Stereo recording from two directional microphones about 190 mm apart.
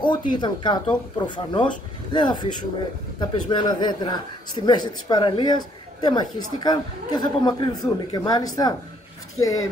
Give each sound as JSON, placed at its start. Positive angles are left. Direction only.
{"t": 0.0, "sound": "speech", "side_deg": 25}